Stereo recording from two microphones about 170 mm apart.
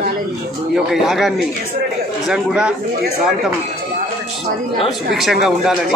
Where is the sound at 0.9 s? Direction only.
Centre (ahead or behind).